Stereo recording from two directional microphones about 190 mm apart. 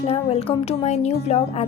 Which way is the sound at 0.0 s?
30° left (ahead or behind).